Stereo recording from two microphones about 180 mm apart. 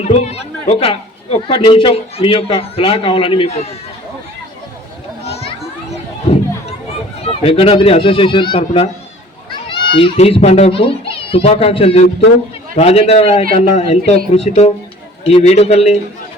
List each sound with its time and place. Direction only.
0.0 s speech: 35° left (ahead or behind)
5.2 s children playing: 35° left (ahead or behind)
7.3 s a child's voice: 30° left (ahead or behind)